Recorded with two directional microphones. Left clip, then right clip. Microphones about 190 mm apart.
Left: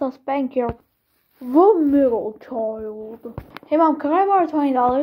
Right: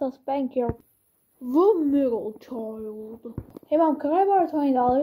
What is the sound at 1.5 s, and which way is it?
Speech, 50° right (ahead or behind).